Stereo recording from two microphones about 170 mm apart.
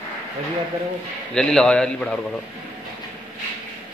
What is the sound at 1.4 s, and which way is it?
Speech, 5° left (ahead or behind).